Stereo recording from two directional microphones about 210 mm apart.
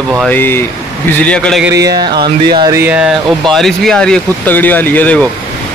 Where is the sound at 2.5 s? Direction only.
15° right (ahead or behind); by 5.3 s 5° left (ahead or behind).